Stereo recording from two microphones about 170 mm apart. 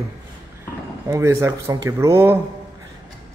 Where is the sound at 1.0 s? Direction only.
15° right (ahead or behind).